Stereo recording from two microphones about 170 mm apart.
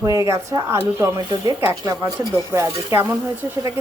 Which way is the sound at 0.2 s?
15° right (ahead or behind).